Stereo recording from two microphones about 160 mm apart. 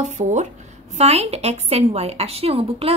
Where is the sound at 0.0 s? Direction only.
50° right (ahead or behind).